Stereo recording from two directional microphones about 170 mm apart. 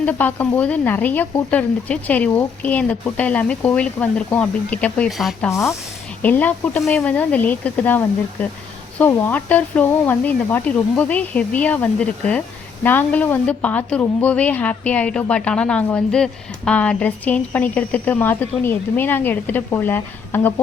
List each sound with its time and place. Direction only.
0.0 s a woman's voice: 10° left (ahead or behind)
5.5 s a woman's voice: 15° left (ahead or behind)